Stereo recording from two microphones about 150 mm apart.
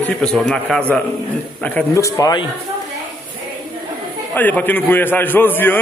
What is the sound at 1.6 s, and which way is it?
Speech, 15° left (ahead or behind).